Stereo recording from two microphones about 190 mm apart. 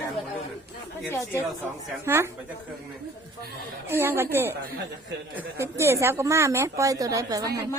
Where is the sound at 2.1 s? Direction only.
10° right (ahead or behind).